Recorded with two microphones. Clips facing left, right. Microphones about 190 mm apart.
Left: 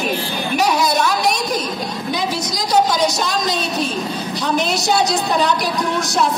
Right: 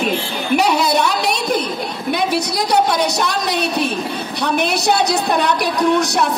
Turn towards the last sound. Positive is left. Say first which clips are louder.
# right 5 dB
turn(degrees=-60)  # may be behind; listen again after turning